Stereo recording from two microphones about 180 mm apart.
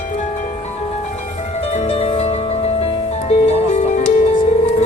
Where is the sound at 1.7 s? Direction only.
35° left (ahead or behind).